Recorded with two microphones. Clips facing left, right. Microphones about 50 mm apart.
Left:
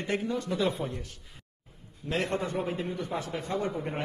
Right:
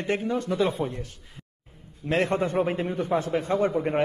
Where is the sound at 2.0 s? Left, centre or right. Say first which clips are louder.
Right 6 dB; right.